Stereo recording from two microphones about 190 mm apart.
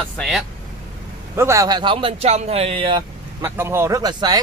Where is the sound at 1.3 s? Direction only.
15° right (ahead or behind).